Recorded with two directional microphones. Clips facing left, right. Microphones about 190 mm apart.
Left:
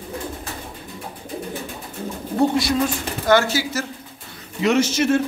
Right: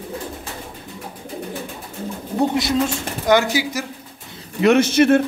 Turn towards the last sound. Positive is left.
turn(degrees=-60)  # may be behind; listen again after turning